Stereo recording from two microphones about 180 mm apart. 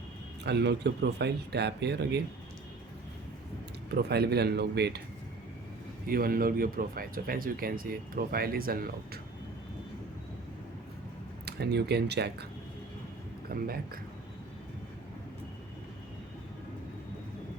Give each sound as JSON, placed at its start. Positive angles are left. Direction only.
{"t": 0.4, "sound": "speech", "side_deg": -70}
{"t": 3.9, "sound": "speech", "side_deg": -65}
{"t": 6.1, "sound": "speech", "side_deg": -55}
{"t": 11.4, "sound": "speech", "side_deg": -65}
{"t": 13.5, "sound": "speech", "side_deg": -55}